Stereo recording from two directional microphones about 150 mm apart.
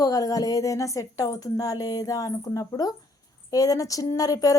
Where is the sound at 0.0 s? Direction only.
25° left (ahead or behind).